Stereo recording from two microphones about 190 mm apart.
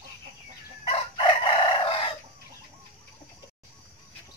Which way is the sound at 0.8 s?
30° left (ahead or behind).